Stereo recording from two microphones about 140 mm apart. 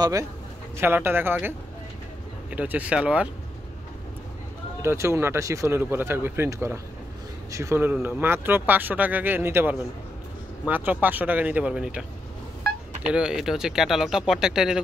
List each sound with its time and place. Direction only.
0.0 s a man's voice: 25° right (ahead or behind)
2.5 s speech: 10° right (ahead or behind)
4.8 s speech: 20° right (ahead or behind)
13.0 s speech: 5° right (ahead or behind)